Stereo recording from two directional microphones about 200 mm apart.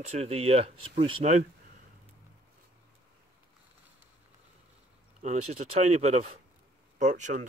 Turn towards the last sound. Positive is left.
turn(degrees=-40)  # may be behind; listen again after turning